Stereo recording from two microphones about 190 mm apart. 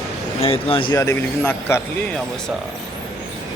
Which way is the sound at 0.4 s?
30° left (ahead or behind).